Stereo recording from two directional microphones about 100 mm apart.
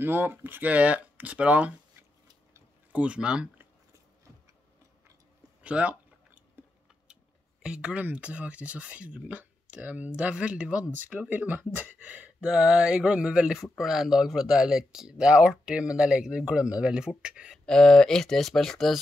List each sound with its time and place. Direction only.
0.0 s speech: 20° right (ahead or behind)
2.9 s speech: 10° right (ahead or behind)
5.6 s a sound: 15° right (ahead or behind)
7.6 s speech: 10° right (ahead or behind)
17.6 s speech: 5° left (ahead or behind)